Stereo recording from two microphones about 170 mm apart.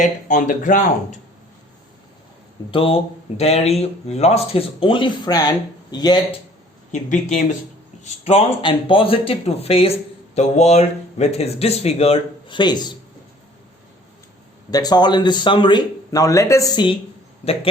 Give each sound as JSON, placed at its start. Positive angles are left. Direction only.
{"t": 0.0, "sound": "speech", "side_deg": 45}
{"t": 2.6, "sound": "speech", "side_deg": 35}
{"t": 6.9, "sound": "speech", "side_deg": 45}
{"t": 14.7, "sound": "a man's voice", "side_deg": 25}